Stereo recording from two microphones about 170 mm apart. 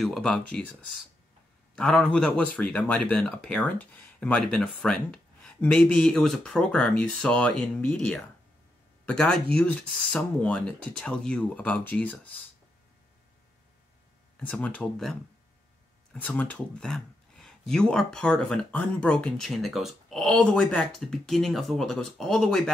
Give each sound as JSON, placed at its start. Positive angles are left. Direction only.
{"t": 0.0, "sound": "speech", "side_deg": 0}
{"t": 1.8, "sound": "speech", "side_deg": 5}
{"t": 14.3, "sound": "speech", "side_deg": 10}